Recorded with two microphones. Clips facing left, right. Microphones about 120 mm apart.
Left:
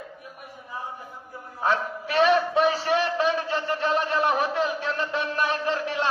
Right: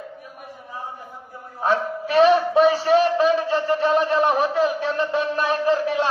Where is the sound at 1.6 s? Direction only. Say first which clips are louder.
Right 4 dB; 35° right (ahead or behind).